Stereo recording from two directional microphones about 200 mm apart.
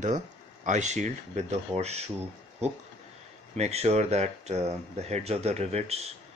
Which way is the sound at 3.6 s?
35° right (ahead or behind).